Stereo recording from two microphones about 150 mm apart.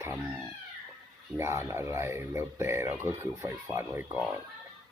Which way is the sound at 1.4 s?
20° right (ahead or behind).